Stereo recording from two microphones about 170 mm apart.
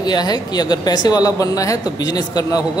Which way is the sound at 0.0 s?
25° left (ahead or behind).